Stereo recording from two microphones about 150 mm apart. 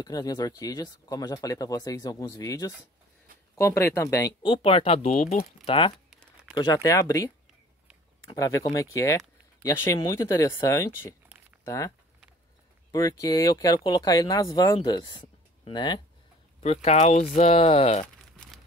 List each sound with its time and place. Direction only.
0.0 s speech: 25° left (ahead or behind); by 5.5 s 60° left (ahead or behind)
5.7 s speech: 35° left (ahead or behind)
8.4 s speech: 20° left (ahead or behind)
12.9 s speech: 20° left (ahead or behind)
16.6 s speech: 45° left (ahead or behind)
18.0 s crumpling: centre (ahead or behind)